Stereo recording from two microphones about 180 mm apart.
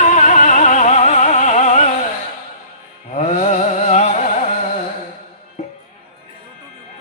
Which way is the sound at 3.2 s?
40° left (ahead or behind).